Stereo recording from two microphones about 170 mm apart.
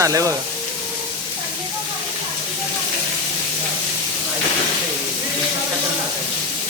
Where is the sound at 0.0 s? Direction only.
20° right (ahead or behind).